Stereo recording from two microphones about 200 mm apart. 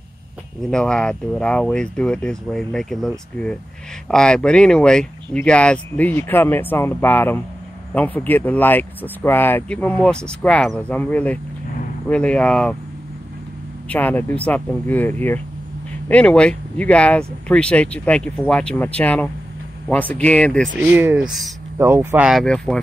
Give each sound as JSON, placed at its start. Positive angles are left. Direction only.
{"t": 0.7, "sound": "speech", "side_deg": 5}
{"t": 13.8, "sound": "speech", "side_deg": 10}
{"t": 20.7, "sound": "speech", "side_deg": -10}
{"t": 21.7, "sound": "speech", "side_deg": -10}